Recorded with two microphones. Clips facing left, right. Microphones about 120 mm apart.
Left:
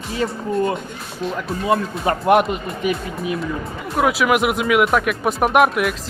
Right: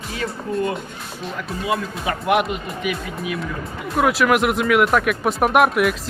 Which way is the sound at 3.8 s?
Centre (ahead or behind).